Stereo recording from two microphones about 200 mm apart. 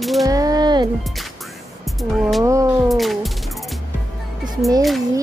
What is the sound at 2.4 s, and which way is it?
Speech, 15° right (ahead or behind).